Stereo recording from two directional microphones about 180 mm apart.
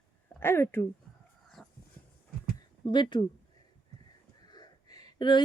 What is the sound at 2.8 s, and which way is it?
Speech, 25° left (ahead or behind).